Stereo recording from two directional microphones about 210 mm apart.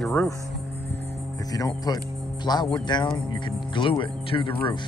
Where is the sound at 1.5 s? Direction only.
15° left (ahead or behind).